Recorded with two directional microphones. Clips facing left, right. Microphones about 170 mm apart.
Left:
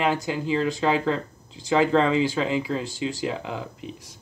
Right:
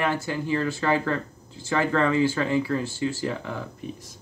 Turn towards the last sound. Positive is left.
turn(degrees=15)  # may be behind; listen again after turning